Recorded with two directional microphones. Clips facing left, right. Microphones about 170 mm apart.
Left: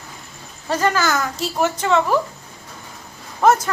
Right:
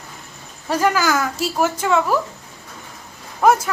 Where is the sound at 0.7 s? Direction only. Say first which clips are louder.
Right 1 dB; 10° right (ahead or behind).